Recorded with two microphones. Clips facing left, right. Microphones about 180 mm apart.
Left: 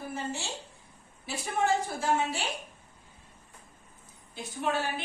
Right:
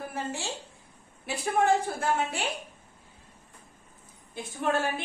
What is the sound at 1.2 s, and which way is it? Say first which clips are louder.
A woman's voice: right 4 dB; 60° right (ahead or behind).